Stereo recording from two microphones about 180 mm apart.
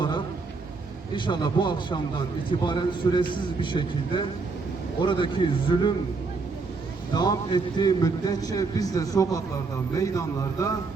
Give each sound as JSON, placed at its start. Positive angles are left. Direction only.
{"t": 1.1, "sound": "a man's voice", "side_deg": 25}
{"t": 7.1, "sound": "a man's voice", "side_deg": 25}